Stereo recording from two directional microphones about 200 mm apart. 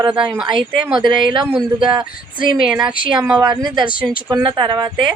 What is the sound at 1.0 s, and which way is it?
Speech, 20° right (ahead or behind).